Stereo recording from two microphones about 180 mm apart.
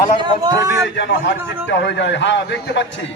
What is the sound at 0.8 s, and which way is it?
A man's voice, 80° left.